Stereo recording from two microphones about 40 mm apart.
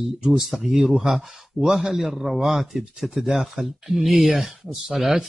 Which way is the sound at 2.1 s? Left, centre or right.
Centre.